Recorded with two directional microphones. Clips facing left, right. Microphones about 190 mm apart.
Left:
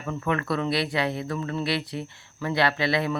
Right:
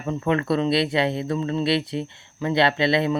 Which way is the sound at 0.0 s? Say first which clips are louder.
Right 5 dB; 25° right (ahead or behind).